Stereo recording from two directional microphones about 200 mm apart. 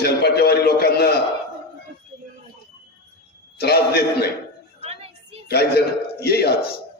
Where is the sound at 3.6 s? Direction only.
55° left (ahead or behind).